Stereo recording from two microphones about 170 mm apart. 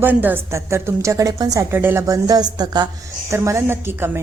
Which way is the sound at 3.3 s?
15° right (ahead or behind).